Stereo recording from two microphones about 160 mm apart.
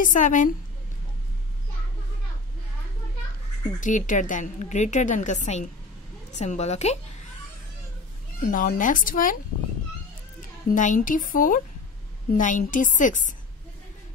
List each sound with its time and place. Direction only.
0.0 s a woman's voice: 55° left (ahead or behind)
3.8 s a woman's voice: 50° left (ahead or behind)
8.5 s speech: 55° left (ahead or behind)
10.7 s a woman's voice: 55° left (ahead or behind)